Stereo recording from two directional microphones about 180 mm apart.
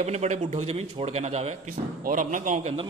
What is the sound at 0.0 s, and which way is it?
A man's voice, 40° right (ahead or behind).